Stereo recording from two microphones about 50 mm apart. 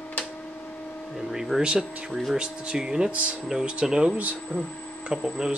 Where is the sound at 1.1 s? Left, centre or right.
Centre.